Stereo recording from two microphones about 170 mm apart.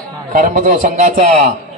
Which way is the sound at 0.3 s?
45° right (ahead or behind).